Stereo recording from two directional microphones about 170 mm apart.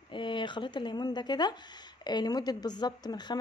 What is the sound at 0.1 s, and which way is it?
Speech, 30° left (ahead or behind).